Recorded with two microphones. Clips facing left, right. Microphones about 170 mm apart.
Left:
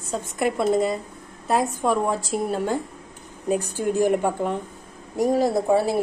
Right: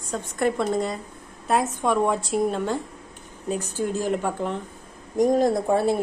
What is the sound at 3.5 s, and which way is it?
Speech, 15° left (ahead or behind).